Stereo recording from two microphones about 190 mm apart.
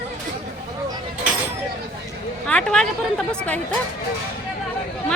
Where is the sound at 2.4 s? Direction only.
5° left (ahead or behind).